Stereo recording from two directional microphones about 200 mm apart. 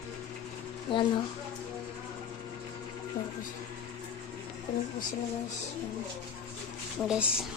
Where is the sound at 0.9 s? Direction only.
25° left (ahead or behind).